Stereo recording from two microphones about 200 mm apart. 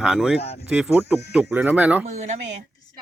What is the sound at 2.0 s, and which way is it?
Speech, 35° right (ahead or behind).